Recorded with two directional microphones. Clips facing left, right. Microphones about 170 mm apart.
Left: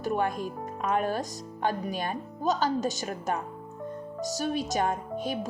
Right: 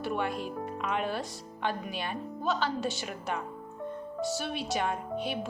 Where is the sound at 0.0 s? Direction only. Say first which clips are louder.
Left 3 dB; 45° left (ahead or behind).